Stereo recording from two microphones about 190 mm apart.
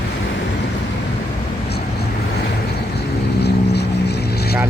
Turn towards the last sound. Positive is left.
turn(degrees=55)  # may be behind; listen again after turning